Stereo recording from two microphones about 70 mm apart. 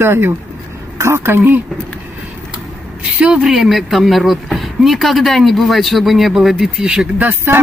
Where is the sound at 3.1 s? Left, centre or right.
Centre.